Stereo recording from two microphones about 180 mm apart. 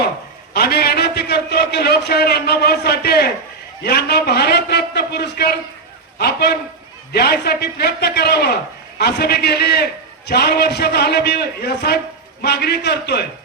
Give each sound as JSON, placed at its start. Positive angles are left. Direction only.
{"t": 0.5, "sound": "a man's voice", "side_deg": 60}